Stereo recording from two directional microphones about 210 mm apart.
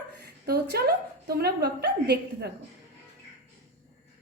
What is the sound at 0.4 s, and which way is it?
A woman's voice, 50° right (ahead or behind).